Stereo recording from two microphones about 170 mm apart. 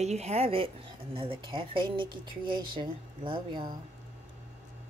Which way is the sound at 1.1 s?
30° right (ahead or behind).